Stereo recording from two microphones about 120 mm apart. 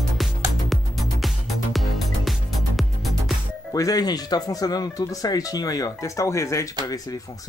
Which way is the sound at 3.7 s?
30° left (ahead or behind).